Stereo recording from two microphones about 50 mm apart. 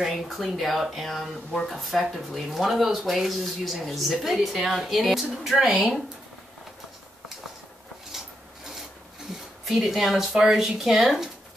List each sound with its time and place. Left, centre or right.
0.0 s speech: centre
9.7 s speech: centre